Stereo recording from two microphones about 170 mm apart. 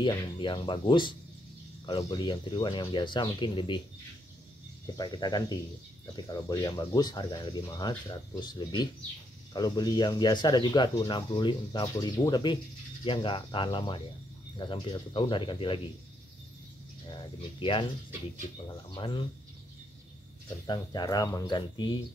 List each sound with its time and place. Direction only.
0.0 s speech: 30° left (ahead or behind)
4.9 s speech: 25° left (ahead or behind)
17.1 s speech: 30° left (ahead or behind)
20.4 s speech: 25° left (ahead or behind)